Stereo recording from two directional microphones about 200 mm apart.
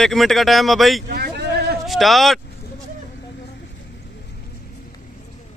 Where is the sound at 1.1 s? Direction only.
50° right (ahead or behind).